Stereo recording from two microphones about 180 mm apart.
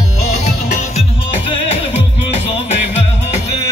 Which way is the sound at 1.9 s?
35° left (ahead or behind).